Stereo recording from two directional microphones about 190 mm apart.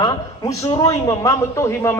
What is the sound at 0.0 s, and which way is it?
A man's voice, 20° left (ahead or behind).